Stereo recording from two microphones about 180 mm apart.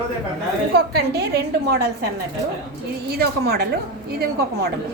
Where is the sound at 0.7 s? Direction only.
65° right (ahead or behind).